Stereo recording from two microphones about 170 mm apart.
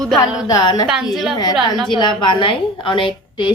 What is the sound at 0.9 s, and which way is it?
Speech, centre (ahead or behind).